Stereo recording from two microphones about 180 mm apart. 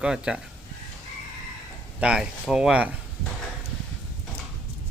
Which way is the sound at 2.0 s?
5° right (ahead or behind).